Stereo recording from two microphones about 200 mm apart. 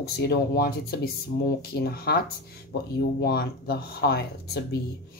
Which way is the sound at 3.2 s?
50° left (ahead or behind).